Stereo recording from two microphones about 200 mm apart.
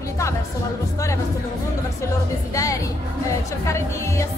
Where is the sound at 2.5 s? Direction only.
15° left (ahead or behind).